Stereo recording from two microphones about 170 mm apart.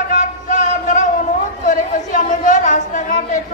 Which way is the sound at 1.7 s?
45° left (ahead or behind).